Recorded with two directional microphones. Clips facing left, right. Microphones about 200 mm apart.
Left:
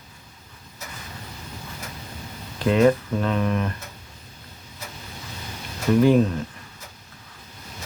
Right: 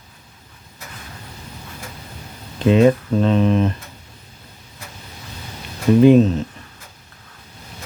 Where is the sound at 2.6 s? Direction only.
20° right (ahead or behind).